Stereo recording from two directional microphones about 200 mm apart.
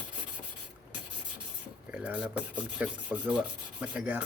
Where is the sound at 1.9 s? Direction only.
5° right (ahead or behind).